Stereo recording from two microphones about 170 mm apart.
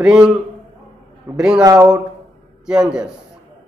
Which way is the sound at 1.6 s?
20° right (ahead or behind).